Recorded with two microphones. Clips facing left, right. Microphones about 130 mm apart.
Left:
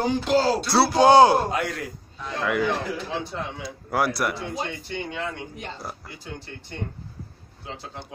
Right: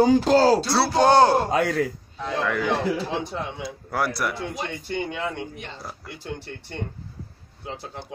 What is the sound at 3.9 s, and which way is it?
Speech, 5° left (ahead or behind).